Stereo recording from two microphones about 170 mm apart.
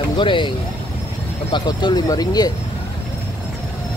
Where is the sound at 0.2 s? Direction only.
30° left (ahead or behind).